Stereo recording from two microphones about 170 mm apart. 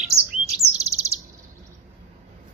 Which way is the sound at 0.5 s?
35° right (ahead or behind).